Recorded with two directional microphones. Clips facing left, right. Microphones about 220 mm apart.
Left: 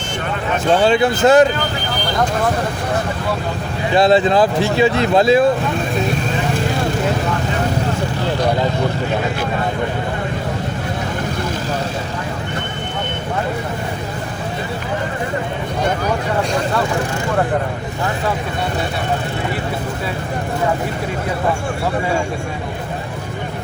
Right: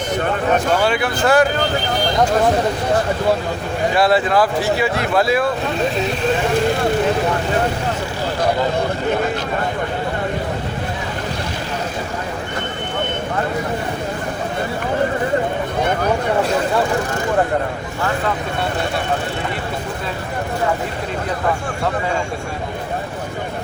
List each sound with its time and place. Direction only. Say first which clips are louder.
0.7 s speech: left 4 dB; 30° left (ahead or behind)
3.9 s speech: left 4 dB; 20° left (ahead or behind)